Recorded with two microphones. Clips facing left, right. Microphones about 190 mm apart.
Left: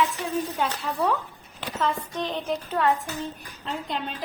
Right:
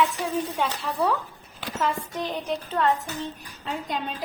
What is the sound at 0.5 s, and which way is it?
Speech, centre (ahead or behind).